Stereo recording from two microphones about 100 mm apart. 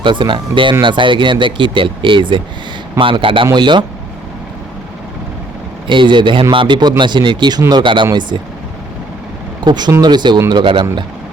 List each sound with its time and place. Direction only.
0.0 s speech: 55° right (ahead or behind)
5.9 s speech: 55° right (ahead or behind)
9.6 s speech: 45° right (ahead or behind)